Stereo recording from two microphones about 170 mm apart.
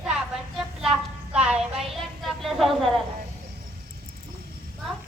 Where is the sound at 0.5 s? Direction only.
5° right (ahead or behind).